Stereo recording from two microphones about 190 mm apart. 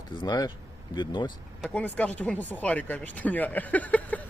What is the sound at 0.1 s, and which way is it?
Speech, 25° left (ahead or behind).